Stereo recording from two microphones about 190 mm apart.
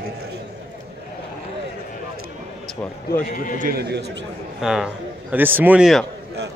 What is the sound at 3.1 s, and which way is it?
Speech, 45° left (ahead or behind).